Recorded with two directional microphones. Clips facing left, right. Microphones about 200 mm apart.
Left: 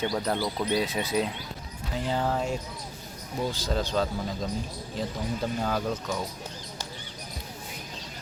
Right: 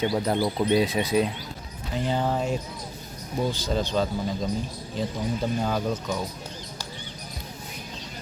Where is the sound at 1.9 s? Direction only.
Centre (ahead or behind).